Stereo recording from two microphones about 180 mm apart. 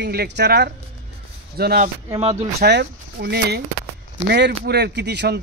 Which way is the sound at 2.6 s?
70° right (ahead or behind).